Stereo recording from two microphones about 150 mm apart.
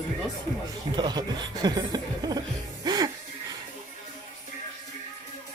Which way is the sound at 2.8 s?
25° right (ahead or behind).